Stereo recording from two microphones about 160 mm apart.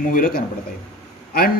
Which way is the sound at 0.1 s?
65° left (ahead or behind).